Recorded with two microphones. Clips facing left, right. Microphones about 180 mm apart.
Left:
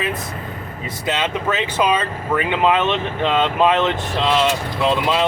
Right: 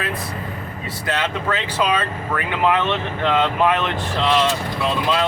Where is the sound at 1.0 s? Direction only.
20° left (ahead or behind).